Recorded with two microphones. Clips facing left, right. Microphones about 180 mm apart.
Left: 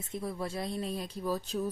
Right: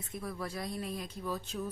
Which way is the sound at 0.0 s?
25° left (ahead or behind).